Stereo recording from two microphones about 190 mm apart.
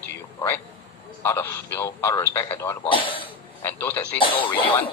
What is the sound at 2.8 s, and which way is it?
Speech, 25° left (ahead or behind).